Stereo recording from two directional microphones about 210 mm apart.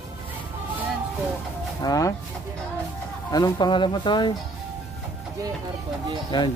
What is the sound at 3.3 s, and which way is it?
Speech, 20° left (ahead or behind).